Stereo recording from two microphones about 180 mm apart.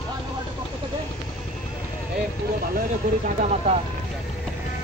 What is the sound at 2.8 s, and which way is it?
Speech, 45° right (ahead or behind).